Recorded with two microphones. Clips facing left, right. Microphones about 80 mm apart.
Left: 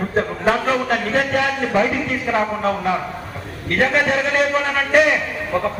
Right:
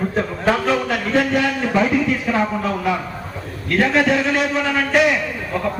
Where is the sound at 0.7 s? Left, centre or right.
Left.